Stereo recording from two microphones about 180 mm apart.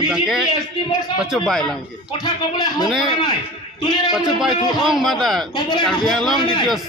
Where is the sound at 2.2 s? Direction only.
25° left (ahead or behind).